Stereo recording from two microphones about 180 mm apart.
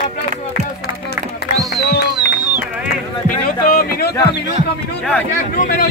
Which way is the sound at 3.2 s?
55° left (ahead or behind).